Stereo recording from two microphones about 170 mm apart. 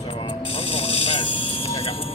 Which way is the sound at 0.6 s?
35° left (ahead or behind).